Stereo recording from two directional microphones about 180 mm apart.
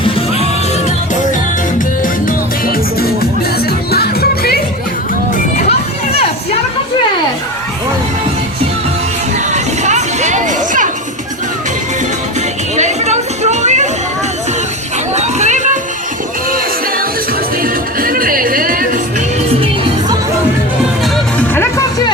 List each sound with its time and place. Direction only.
2.2 s music: 55° left (ahead or behind)
9.5 s music: 40° right (ahead or behind)
12.7 s a sound: 40° right (ahead or behind)
15.1 s a sound: 40° right (ahead or behind)
17.6 s music: 50° right (ahead or behind)
21.0 s music: 10° left (ahead or behind)